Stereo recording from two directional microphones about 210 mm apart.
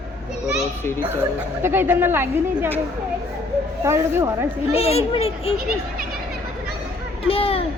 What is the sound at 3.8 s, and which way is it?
Speech, 15° right (ahead or behind).